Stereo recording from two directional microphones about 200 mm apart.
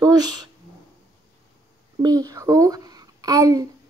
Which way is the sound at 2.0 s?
20° right (ahead or behind).